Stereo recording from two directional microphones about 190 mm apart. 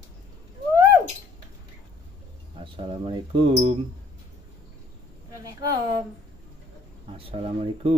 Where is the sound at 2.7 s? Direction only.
30° right (ahead or behind).